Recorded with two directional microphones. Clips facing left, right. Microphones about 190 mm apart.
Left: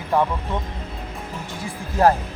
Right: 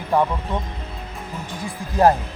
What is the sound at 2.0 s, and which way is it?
Speech, 15° right (ahead or behind).